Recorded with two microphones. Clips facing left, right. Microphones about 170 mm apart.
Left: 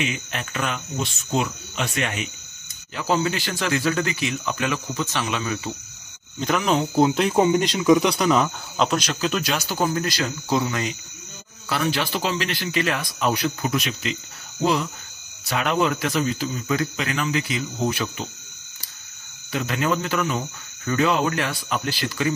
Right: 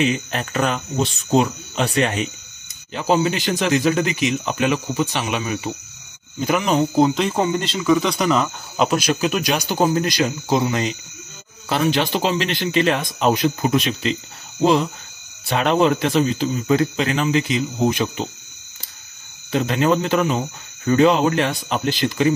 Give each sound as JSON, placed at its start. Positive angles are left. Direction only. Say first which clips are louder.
{"t": 0.0, "sound": "speech", "louder": "right 7 dB", "side_deg": -35}
{"t": 2.9, "sound": "speech", "louder": "right 4 dB", "side_deg": -20}
{"t": 6.4, "sound": "speech", "louder": "right 3 dB", "side_deg": -5}
{"t": 8.7, "sound": "speech", "louder": "right 4 dB", "side_deg": -10}
{"t": 19.5, "sound": "speech", "louder": "right 6 dB", "side_deg": -25}